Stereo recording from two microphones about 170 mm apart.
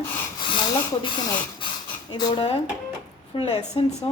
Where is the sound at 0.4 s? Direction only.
30° left (ahead or behind).